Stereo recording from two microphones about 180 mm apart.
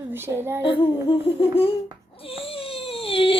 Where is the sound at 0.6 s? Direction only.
30° left (ahead or behind).